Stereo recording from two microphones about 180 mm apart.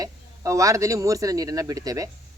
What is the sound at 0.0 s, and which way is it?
Speech, 20° right (ahead or behind).